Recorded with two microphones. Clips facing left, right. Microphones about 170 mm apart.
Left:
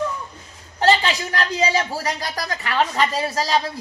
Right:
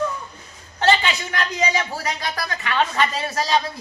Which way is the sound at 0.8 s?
35° left (ahead or behind).